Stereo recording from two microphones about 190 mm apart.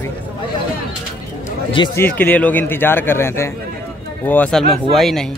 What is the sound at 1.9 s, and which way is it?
A man's voice, 10° left (ahead or behind).